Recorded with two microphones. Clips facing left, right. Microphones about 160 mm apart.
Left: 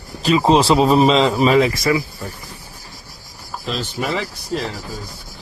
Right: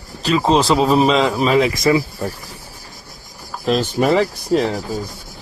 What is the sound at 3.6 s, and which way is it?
Speech, 50° right (ahead or behind).